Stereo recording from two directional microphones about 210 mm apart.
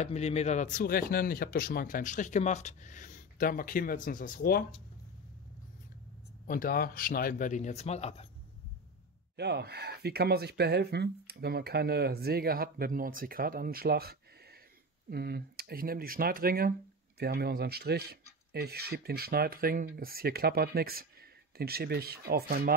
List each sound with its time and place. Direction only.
0.0 s speech: 30° left (ahead or behind)
6.4 s speech: 40° left (ahead or behind)
9.4 s speech: 50° right (ahead or behind)